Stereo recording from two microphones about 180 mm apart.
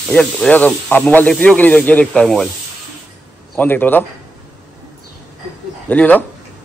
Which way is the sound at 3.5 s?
10° left (ahead or behind).